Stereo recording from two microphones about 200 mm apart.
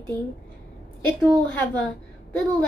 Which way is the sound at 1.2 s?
5° left (ahead or behind).